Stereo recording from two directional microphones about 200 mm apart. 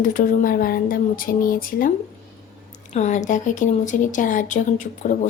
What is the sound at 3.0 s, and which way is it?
A woman's voice, 35° left (ahead or behind).